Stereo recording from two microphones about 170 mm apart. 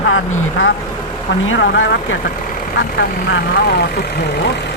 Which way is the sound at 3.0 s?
70° left (ahead or behind).